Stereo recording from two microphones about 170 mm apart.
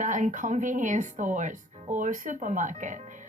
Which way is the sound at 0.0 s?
45° right (ahead or behind).